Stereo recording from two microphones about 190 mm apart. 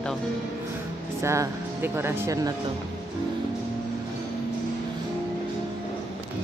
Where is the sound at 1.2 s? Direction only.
15° right (ahead or behind).